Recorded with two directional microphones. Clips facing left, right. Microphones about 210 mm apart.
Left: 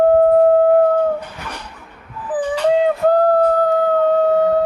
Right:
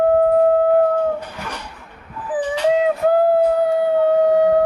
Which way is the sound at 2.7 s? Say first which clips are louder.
Left 2 dB; 5° right (ahead or behind).